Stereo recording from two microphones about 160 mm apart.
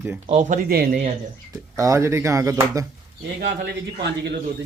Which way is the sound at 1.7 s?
20° right (ahead or behind).